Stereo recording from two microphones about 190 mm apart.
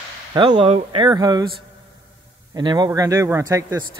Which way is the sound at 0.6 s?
30° right (ahead or behind).